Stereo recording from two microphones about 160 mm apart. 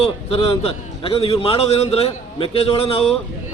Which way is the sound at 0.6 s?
35° left (ahead or behind).